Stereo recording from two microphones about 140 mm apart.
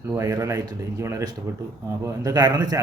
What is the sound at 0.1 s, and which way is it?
A man's voice, 25° right (ahead or behind).